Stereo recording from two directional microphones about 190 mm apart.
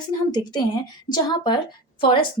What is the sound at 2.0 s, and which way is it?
Speech, 25° left (ahead or behind).